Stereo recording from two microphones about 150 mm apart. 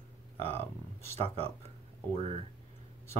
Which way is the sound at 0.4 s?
40° right (ahead or behind).